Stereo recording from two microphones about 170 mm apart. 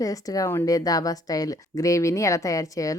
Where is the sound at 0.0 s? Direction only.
20° left (ahead or behind).